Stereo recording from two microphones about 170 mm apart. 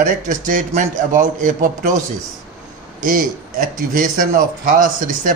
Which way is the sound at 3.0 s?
55° right (ahead or behind).